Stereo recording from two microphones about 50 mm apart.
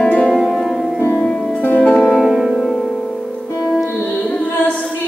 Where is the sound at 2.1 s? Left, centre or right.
Centre.